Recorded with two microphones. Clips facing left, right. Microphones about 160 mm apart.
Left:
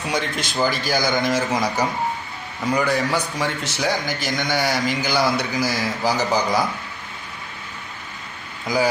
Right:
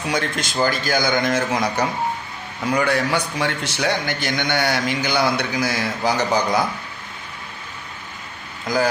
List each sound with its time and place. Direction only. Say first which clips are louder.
0.0 s a man's voice: right 1 dB; centre (ahead or behind)
8.6 s speech: even; 5° left (ahead or behind)